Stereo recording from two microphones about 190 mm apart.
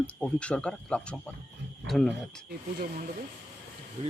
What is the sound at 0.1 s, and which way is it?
Speech, 5° left (ahead or behind).